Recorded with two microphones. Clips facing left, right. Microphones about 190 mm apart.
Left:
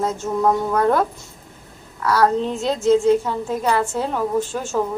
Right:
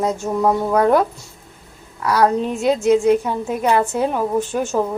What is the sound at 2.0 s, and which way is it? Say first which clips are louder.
A woman's voice: right 1 dB; 15° right (ahead or behind).